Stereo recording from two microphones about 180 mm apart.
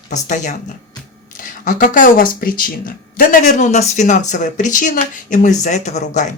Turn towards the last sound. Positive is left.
turn(degrees=40)  # may be behind; listen again after turning